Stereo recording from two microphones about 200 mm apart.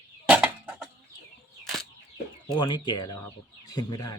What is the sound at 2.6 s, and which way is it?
Speech, 20° left (ahead or behind).